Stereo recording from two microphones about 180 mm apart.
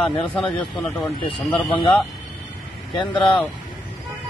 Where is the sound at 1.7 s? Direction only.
30° left (ahead or behind).